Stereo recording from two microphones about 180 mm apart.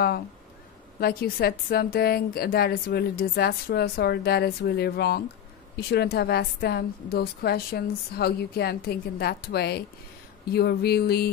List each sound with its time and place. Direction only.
0.9 s a woman's voice: 60° left (ahead or behind)